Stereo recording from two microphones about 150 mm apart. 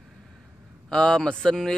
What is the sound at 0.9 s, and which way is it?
Speech, 5° left (ahead or behind).